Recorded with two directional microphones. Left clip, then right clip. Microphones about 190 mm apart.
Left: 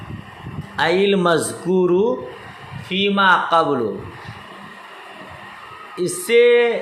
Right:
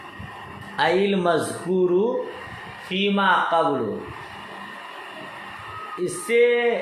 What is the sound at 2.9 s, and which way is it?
Speech, 40° left (ahead or behind).